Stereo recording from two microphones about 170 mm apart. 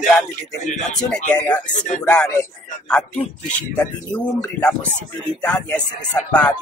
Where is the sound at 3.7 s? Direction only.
10° left (ahead or behind).